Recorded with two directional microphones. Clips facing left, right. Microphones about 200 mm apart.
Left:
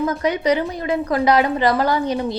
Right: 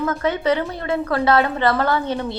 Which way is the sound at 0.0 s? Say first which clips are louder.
Left 1 dB; 15° left (ahead or behind).